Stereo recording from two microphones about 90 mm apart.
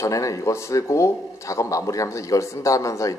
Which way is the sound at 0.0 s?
35° left (ahead or behind).